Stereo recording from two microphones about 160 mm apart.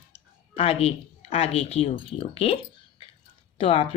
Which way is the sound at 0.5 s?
35° left (ahead or behind).